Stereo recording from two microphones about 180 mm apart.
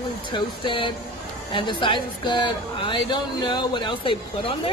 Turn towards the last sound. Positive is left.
turn(degrees=30)  # may be behind; listen again after turning